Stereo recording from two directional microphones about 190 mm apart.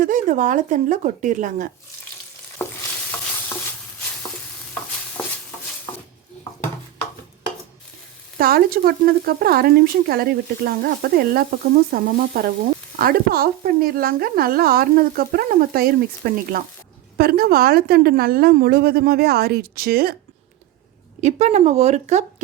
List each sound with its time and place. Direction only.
0.0 s speech: 45° right (ahead or behind)
2.6 s stir: 15° left (ahead or behind)
5.2 s a sound: 5° left (ahead or behind)
8.4 s speech: 50° right (ahead or behind)
21.2 s speech: 35° right (ahead or behind)